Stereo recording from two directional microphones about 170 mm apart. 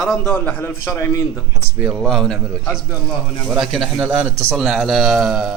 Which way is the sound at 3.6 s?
Centre (ahead or behind).